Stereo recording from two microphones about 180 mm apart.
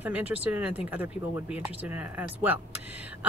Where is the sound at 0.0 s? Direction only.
10° right (ahead or behind).